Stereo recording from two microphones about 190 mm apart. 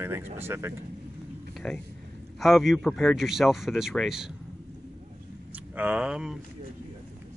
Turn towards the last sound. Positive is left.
turn(degrees=-5)  # may be behind; listen again after turning